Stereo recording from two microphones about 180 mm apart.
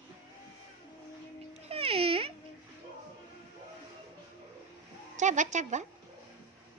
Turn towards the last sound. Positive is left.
turn(degrees=-40)  # may be behind; listen again after turning